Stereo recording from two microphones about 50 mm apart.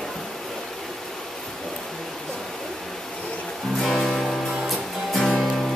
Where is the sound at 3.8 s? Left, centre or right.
Centre.